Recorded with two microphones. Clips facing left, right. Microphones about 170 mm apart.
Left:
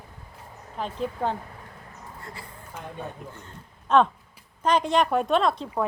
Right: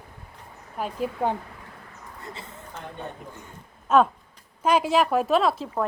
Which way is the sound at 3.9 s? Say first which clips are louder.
Right 1 dB; 5° right (ahead or behind).